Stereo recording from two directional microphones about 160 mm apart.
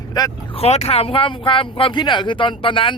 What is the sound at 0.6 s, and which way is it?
Speech, 40° left (ahead or behind).